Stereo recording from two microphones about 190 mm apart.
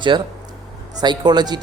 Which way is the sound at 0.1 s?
25° right (ahead or behind).